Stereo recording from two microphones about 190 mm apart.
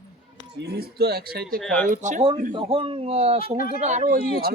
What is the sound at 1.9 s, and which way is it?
Speech, 40° right (ahead or behind).